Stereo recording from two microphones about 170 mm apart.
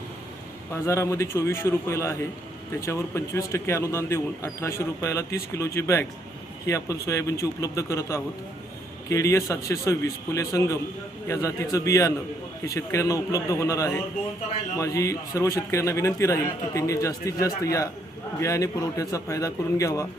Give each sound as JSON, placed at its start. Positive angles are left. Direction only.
{"t": 0.7, "sound": "a man's voice", "side_deg": 15}